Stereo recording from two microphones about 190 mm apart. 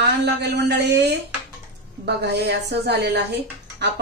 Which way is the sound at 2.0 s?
60° right (ahead or behind).